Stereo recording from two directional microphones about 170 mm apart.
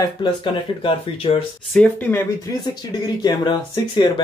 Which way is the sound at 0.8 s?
30° left (ahead or behind).